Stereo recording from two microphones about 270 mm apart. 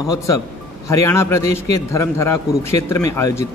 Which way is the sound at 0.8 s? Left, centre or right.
Centre.